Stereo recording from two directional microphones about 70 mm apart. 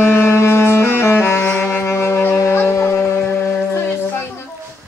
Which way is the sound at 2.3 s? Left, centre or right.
Left.